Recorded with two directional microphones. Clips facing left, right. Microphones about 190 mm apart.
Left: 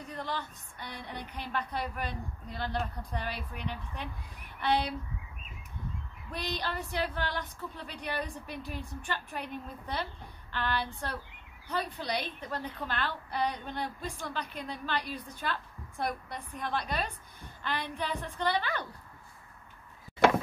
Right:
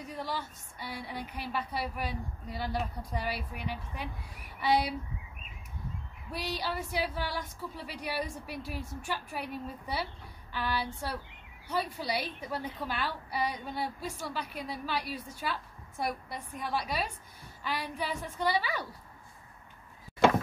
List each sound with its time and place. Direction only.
0.0 s a woman's voice: 10° right (ahead or behind)
6.3 s a woman's voice: 10° right (ahead or behind)